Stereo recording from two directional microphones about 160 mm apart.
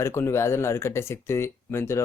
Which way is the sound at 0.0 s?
15° left (ahead or behind).